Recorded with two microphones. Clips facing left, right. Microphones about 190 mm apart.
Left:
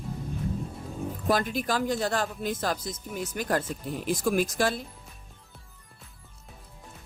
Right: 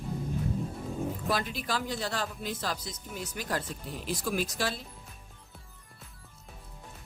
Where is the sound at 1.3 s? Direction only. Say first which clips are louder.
Left 8 dB; 45° left (ahead or behind).